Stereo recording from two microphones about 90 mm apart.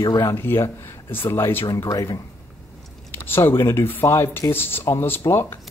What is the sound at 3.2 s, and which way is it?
Speech, 25° left (ahead or behind).